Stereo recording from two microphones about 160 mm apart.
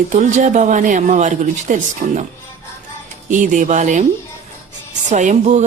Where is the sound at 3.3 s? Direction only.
50° right (ahead or behind).